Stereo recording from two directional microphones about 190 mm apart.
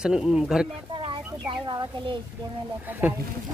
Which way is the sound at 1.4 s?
25° right (ahead or behind).